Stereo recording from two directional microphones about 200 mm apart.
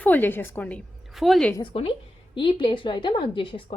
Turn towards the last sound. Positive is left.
turn(degrees=25)  # may be behind; listen again after turning